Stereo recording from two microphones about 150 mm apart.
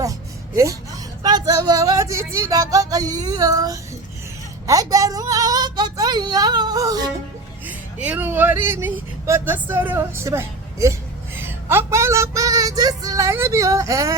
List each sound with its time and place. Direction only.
0.5 s speech: 20° right (ahead or behind)
7.7 s a woman's voice: 10° right (ahead or behind)